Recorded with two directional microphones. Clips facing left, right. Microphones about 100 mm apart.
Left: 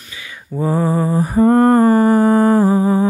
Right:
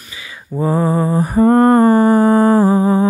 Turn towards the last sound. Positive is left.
turn(degrees=-30)  # may be behind; listen again after turning